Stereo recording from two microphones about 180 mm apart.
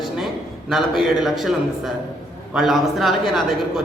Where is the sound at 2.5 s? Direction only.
Centre (ahead or behind).